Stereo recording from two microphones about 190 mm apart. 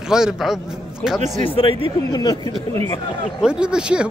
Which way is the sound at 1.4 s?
30° left (ahead or behind).